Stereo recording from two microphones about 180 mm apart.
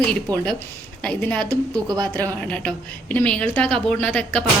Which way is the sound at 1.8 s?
20° right (ahead or behind).